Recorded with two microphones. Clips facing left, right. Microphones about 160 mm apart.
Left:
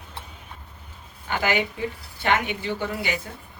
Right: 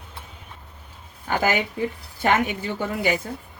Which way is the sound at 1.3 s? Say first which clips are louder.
Right 2 dB; 45° right (ahead or behind).